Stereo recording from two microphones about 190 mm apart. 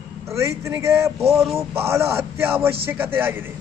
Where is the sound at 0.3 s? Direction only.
15° right (ahead or behind).